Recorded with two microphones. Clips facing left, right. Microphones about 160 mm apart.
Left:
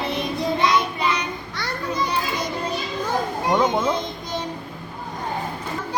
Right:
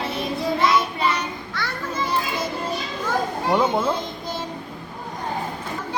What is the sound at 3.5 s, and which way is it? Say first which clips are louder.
Speech: even; 5° right (ahead or behind).